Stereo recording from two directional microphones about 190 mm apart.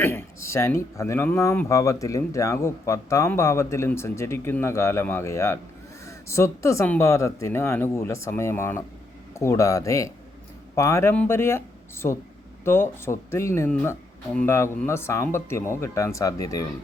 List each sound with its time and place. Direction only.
0.0 s a sound: 10° left (ahead or behind)
0.4 s speech: 15° left (ahead or behind)
12.6 s speech: 10° left (ahead or behind)